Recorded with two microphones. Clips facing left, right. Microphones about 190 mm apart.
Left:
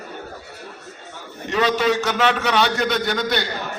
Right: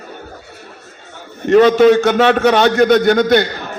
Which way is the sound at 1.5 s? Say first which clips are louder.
Right 11 dB; 50° right (ahead or behind).